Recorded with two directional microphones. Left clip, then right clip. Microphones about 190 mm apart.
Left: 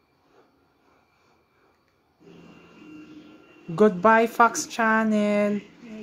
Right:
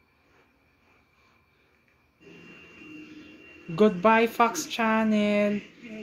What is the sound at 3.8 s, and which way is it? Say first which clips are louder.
Speech: left 3 dB; 5° left (ahead or behind).